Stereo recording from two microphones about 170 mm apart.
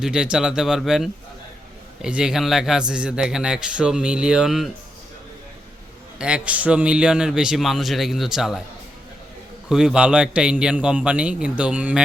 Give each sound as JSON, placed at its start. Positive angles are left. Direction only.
{"t": 0.0, "sound": "a man's voice", "side_deg": -5}
{"t": 6.1, "sound": "a man's voice", "side_deg": -5}
{"t": 9.6, "sound": "a man's voice", "side_deg": -5}